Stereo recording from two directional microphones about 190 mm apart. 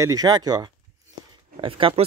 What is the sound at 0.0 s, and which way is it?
Speech, 20° right (ahead or behind).